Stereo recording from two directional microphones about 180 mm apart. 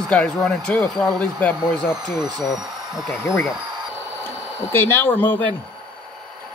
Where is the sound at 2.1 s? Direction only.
20° right (ahead or behind).